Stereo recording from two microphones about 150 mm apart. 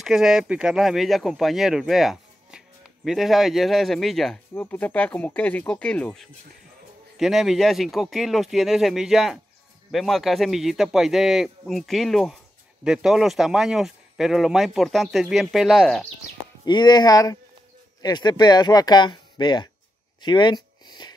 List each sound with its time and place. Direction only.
0.0 s speech: 5° right (ahead or behind)
16.6 s speech: 30° left (ahead or behind)
20.2 s a sound: 30° left (ahead or behind)